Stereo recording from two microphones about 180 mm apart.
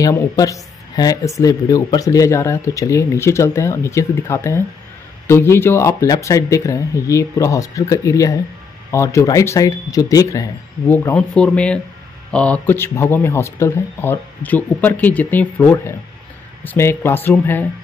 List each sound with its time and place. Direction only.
0.0 s speech: 20° left (ahead or behind)